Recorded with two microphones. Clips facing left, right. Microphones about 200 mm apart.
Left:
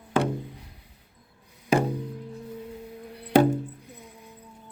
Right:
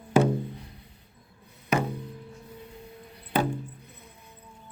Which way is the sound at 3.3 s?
80° left.